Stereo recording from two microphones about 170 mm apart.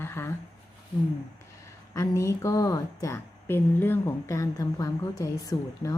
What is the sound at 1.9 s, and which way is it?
A woman's voice, 20° left (ahead or behind).